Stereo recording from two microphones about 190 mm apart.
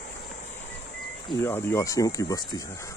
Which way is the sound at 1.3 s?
15° left (ahead or behind).